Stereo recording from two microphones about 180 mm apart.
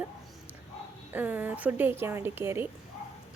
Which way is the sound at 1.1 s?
10° right (ahead or behind).